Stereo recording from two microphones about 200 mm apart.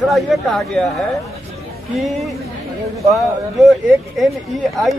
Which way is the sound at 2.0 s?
Centre (ahead or behind).